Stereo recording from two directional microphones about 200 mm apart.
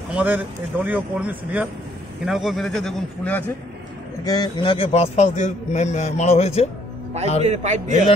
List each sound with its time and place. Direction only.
0.1 s speech: 5° right (ahead or behind); by 3.5 s 10° left (ahead or behind)
4.2 s a man's voice: 20° left (ahead or behind)
7.4 s a man's voice: 35° right (ahead or behind)